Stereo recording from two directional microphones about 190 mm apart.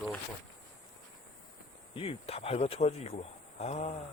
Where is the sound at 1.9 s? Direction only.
30° left (ahead or behind).